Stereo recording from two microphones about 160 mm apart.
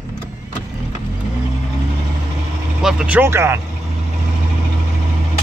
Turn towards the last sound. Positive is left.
turn(degrees=-15)  # may be behind; listen again after turning